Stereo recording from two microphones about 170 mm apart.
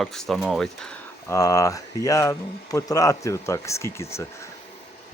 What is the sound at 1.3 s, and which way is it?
Speech, 20° left (ahead or behind).